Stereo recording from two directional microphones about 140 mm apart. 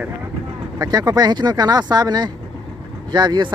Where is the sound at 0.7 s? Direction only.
30° right (ahead or behind).